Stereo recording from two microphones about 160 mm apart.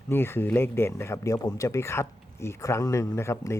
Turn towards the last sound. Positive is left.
turn(degrees=15)  # may be behind; listen again after turning